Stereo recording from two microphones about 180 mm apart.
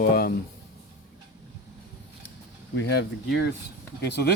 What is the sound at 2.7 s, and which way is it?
Speech, 65° left (ahead or behind).